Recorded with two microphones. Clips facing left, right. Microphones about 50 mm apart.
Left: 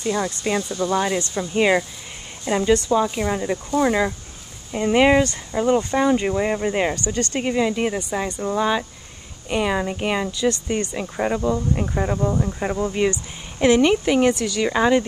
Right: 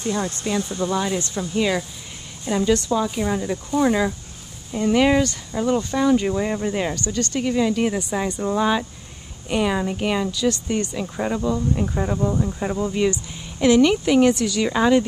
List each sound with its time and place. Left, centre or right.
0.0 s speech: left
0.7 s speech: right
0.9 s a woman's voice: left
2.7 s speech: centre
7.5 s speech: centre
8.1 s speech: centre
10.7 s speech: centre
11.0 s speech: centre